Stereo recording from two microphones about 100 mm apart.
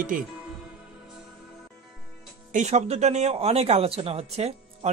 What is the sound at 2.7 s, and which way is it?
Speech, 90° right.